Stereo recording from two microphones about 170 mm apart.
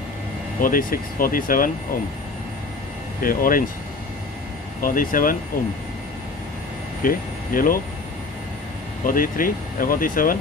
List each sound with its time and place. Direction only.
0.6 s speech: 55° left (ahead or behind)
3.2 s speech: 55° left (ahead or behind)
4.8 s speech: 55° left (ahead or behind)
7.0 s speech: 55° left (ahead or behind)
9.0 s speech: 55° left (ahead or behind)